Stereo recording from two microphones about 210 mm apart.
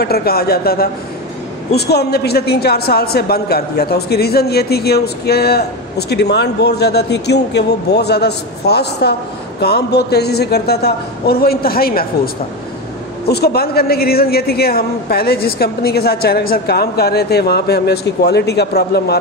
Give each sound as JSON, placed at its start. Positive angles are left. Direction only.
{"t": 0.0, "sound": "a woman's voice", "side_deg": 45}
{"t": 13.3, "sound": "a woman's voice", "side_deg": 50}